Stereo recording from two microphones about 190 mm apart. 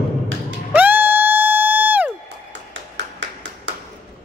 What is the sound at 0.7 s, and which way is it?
Music, 10° right (ahead or behind).